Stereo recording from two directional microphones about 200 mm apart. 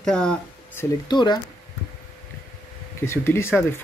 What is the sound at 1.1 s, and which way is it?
Speech, 20° left (ahead or behind).